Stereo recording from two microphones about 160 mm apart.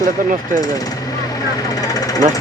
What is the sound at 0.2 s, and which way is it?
Speech, 60° right (ahead or behind).